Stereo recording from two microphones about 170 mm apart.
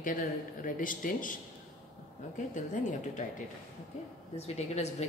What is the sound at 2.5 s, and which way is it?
Speech, 45° left (ahead or behind).